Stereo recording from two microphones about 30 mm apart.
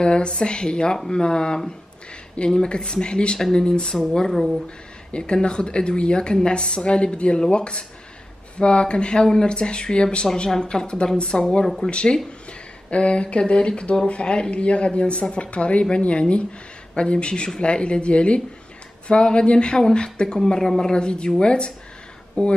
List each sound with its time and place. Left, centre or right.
0.0 s speech: left
0.9 s speech: centre
1.2 s speech: left
5.1 s speech: left
11.6 s speech: centre
11.9 s speech: left
20.4 s speech: centre
20.9 s speech: left
22.4 s speech: left